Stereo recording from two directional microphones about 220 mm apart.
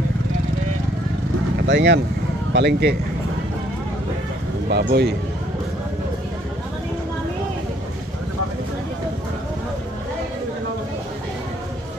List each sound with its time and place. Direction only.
1.7 s speech: 55° right (ahead or behind)
4.6 s speech: 50° right (ahead or behind)